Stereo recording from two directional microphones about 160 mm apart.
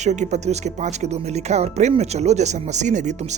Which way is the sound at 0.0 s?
45° right (ahead or behind).